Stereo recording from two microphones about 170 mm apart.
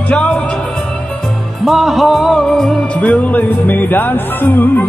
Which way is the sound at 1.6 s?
Centre (ahead or behind).